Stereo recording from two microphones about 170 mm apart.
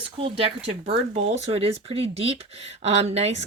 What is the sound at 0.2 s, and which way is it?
A woman's voice, 35° right (ahead or behind).